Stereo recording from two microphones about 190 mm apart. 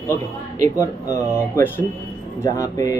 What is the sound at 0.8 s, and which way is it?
Speech, 15° left (ahead or behind).